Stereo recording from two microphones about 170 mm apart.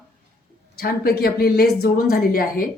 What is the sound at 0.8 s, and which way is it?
A woman's voice, 65° left (ahead or behind).